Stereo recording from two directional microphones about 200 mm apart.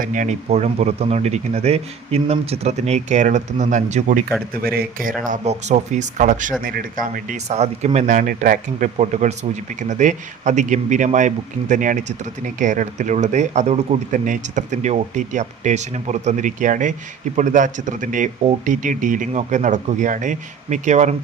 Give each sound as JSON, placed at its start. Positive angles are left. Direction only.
{"t": 0.0, "sound": "speech", "side_deg": -40}
{"t": 4.6, "sound": "speech", "side_deg": -50}